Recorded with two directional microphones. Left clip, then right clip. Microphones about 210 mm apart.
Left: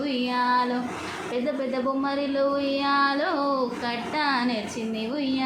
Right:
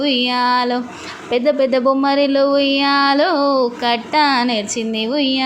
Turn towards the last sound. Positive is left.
turn(degrees=-40)  # may be behind; listen again after turning